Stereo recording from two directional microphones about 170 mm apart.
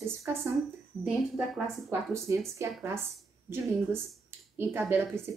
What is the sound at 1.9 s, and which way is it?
A woman's voice, 15° right (ahead or behind).